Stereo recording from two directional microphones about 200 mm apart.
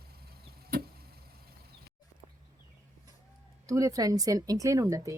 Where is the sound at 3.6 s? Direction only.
15° right (ahead or behind).